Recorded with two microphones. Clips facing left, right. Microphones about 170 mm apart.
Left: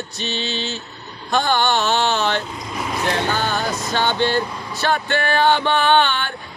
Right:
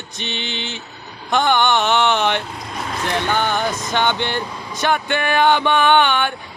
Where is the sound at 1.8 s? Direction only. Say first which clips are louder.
Right 2 dB; 60° right (ahead or behind).